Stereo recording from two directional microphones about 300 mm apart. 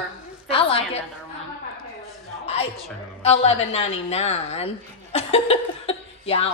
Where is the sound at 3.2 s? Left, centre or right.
Left.